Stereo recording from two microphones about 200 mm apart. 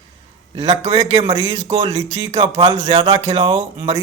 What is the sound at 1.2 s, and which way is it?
Speech, 20° right (ahead or behind).